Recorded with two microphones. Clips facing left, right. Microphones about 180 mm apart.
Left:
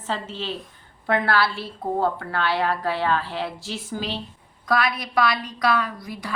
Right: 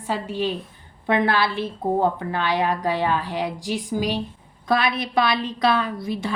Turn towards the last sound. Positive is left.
turn(degrees=-25)  # may be behind; listen again after turning